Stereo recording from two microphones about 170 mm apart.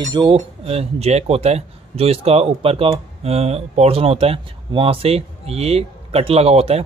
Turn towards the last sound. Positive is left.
turn(degrees=-35)  # may be behind; listen again after turning